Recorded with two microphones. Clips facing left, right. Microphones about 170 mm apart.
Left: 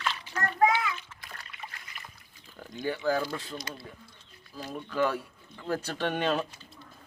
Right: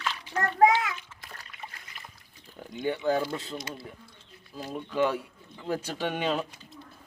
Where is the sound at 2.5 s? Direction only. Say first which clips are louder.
Right 2 dB; 20° right (ahead or behind).